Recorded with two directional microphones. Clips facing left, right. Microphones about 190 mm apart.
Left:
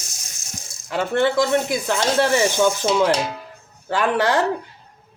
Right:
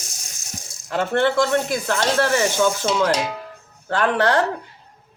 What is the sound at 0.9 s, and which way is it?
Speech, 10° left (ahead or behind).